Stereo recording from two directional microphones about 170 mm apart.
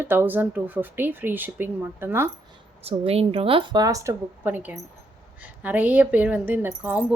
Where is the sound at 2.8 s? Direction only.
35° right (ahead or behind).